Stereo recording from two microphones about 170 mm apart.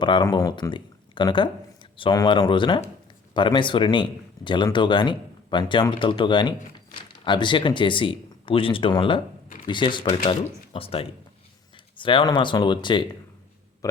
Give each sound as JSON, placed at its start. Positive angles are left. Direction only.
{"t": 0.0, "sound": "speech", "side_deg": 25}